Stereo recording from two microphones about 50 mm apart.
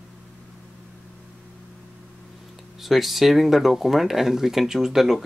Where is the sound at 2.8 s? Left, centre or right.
Centre.